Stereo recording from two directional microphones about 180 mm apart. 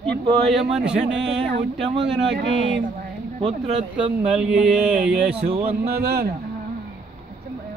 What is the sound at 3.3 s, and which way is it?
Speech, 35° right (ahead or behind).